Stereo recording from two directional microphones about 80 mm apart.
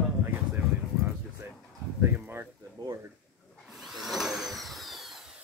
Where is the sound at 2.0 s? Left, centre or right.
Right.